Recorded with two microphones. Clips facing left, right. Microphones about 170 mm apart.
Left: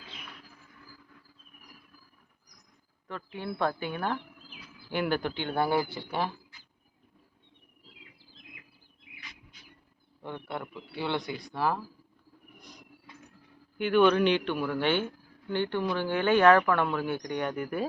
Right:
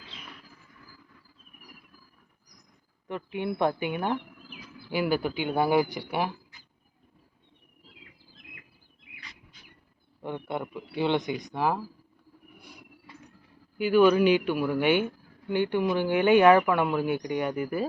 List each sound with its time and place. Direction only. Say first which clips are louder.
3.3 s a man's voice: right 4 dB; 20° right (ahead or behind)
4.9 s a man's voice: right 3 dB; 5° right (ahead or behind)
10.2 s speech: right 4 dB; 15° right (ahead or behind)
12.5 s cricket: right 1 dB; 10° right (ahead or behind)
13.7 s a man's voice: right 3 dB; 5° right (ahead or behind)